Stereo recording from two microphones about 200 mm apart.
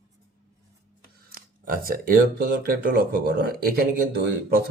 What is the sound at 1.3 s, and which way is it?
Speech, 45° right (ahead or behind).